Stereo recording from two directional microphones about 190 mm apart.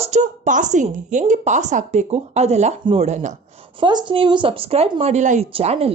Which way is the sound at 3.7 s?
25° right (ahead or behind).